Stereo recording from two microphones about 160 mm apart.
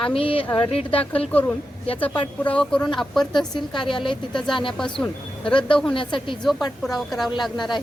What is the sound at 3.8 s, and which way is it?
Speech, 30° left (ahead or behind).